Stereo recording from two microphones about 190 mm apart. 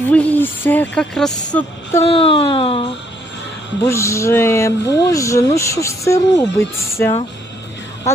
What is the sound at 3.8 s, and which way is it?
Speech, 15° left (ahead or behind).